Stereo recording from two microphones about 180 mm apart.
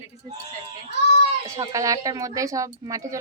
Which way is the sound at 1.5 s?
20° right (ahead or behind).